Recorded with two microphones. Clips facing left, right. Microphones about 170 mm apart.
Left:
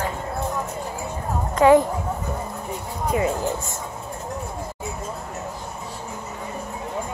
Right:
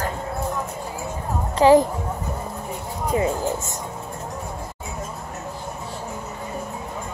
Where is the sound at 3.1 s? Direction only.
30° right (ahead or behind).